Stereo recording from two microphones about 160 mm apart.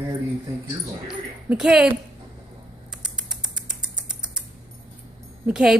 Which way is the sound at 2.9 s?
5° right (ahead or behind).